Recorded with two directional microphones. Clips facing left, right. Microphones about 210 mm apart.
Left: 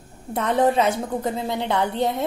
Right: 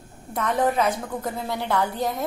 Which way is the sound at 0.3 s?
30° left (ahead or behind).